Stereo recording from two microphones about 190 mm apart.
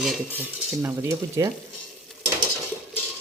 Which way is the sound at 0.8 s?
15° right (ahead or behind).